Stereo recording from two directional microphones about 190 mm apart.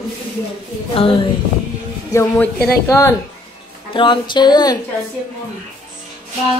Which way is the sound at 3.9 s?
25° left (ahead or behind).